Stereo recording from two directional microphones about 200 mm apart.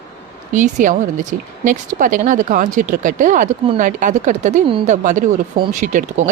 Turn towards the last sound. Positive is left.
turn(degrees=-40)  # may be behind; listen again after turning